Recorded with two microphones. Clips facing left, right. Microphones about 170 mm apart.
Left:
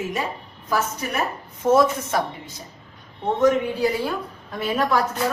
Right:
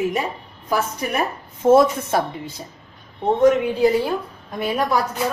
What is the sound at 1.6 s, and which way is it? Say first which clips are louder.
A woman's voice: right 4 dB; 25° right (ahead or behind).